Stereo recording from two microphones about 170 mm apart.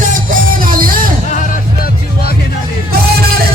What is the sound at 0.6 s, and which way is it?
Music, 55° right (ahead or behind).